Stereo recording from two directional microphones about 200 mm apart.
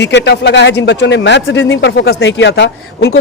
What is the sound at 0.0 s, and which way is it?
A man's voice, 60° left (ahead or behind).